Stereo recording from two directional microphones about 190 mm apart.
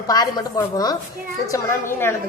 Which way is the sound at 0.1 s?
20° left (ahead or behind).